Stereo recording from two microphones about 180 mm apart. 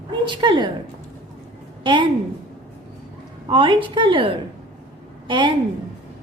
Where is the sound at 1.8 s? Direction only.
25° right (ahead or behind).